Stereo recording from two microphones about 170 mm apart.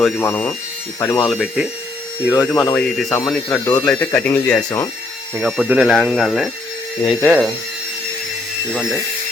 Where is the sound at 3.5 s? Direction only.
20° left (ahead or behind).